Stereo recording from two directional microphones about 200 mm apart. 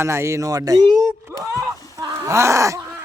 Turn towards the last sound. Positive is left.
turn(degrees=-15)  # may be behind; listen again after turning